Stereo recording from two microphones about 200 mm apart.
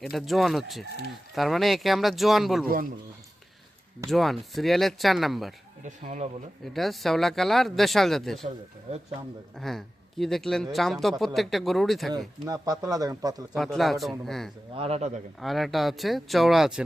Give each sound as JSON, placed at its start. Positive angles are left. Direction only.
{"t": 0.0, "sound": "speech", "side_deg": 0}
{"t": 4.1, "sound": "speech", "side_deg": 0}
{"t": 5.8, "sound": "speech", "side_deg": -35}
{"t": 6.7, "sound": "speech", "side_deg": 0}
{"t": 8.9, "sound": "speech", "side_deg": -35}
{"t": 9.6, "sound": "speech", "side_deg": 0}
{"t": 12.5, "sound": "speech", "side_deg": -20}
{"t": 13.5, "sound": "speech", "side_deg": 0}
{"t": 14.8, "sound": "speech", "side_deg": -30}
{"t": 15.4, "sound": "speech", "side_deg": 0}